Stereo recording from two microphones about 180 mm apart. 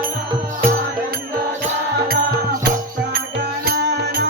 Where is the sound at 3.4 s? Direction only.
65° right (ahead or behind).